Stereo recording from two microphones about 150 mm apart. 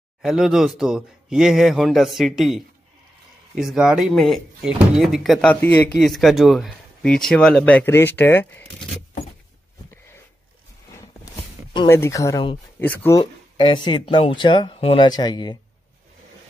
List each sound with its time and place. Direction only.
0.2 s speech: 5° right (ahead or behind); by 8.6 s 15° left (ahead or behind)
11.9 s speech: 20° left (ahead or behind)
13.2 s speech: 30° left (ahead or behind)
15.0 s speech: 25° left (ahead or behind)